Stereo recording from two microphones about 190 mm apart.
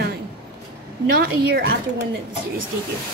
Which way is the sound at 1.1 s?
55° right (ahead or behind).